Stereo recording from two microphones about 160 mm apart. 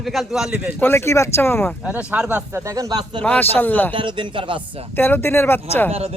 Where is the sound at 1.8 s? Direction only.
10° right (ahead or behind); by 3.2 s 25° right (ahead or behind).